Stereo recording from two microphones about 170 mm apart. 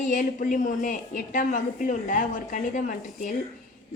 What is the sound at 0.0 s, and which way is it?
A woman's voice, 50° left (ahead or behind).